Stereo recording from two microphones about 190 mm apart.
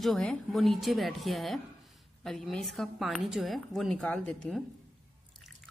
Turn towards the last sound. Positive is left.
turn(degrees=5)  # may be behind; listen again after turning